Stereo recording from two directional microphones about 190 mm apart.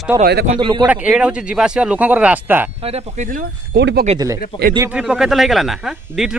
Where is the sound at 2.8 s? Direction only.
30° right (ahead or behind); by 4.0 s 60° right (ahead or behind).